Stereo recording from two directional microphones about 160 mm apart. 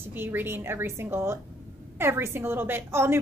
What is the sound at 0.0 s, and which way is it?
A woman's voice, 15° right (ahead or behind).